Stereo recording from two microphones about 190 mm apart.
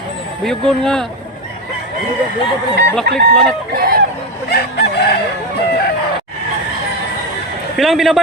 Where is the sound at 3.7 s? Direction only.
55° right (ahead or behind).